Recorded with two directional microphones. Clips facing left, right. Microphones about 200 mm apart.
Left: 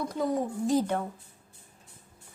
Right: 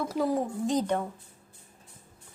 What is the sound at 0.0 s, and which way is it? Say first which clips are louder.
A woman's voice: right 1 dB; centre (ahead or behind).